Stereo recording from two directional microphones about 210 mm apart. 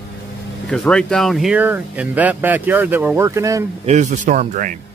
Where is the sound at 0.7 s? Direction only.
5° left (ahead or behind); by 3.6 s 15° right (ahead or behind).